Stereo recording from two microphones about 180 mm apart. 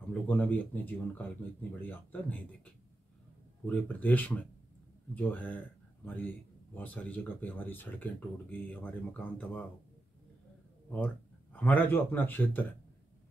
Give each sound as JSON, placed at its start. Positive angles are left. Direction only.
{"t": 0.1, "sound": "speech", "side_deg": 10}
{"t": 11.5, "sound": "speech", "side_deg": 10}